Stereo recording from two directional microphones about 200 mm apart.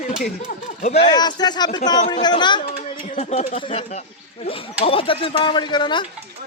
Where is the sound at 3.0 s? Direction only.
35° left (ahead or behind).